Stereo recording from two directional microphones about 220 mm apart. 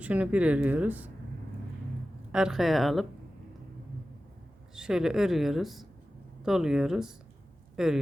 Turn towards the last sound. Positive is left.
turn(degrees=0)  # may be behind; listen again after turning